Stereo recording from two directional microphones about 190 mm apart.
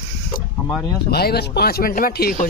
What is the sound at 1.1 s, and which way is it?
Speech, 55° left (ahead or behind).